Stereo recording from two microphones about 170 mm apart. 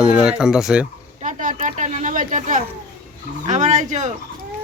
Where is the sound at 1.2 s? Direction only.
50° right (ahead or behind).